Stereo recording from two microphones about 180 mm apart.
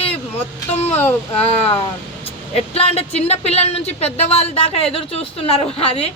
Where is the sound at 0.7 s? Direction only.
35° left (ahead or behind).